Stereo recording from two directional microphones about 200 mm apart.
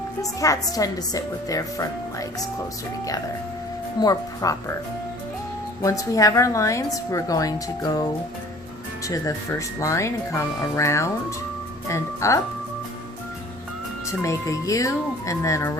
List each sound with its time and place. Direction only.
0.2 s a woman's voice: 15° left (ahead or behind)
4.0 s a woman's voice: 20° left (ahead or behind)
5.8 s a woman's voice: 15° left (ahead or behind)
9.0 s a woman's voice: 15° left (ahead or behind)
14.1 s a woman's voice: 15° left (ahead or behind)